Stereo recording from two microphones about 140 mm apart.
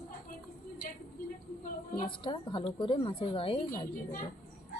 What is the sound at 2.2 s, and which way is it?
A woman's voice, 35° left (ahead or behind).